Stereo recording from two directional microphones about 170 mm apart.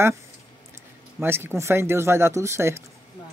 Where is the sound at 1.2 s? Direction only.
15° right (ahead or behind).